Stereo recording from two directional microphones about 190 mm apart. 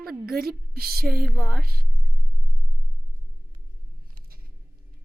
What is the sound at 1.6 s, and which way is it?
Speech, 50° right (ahead or behind).